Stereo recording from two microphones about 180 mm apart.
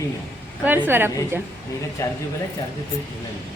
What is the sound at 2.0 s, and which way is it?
Speech, 15° left (ahead or behind).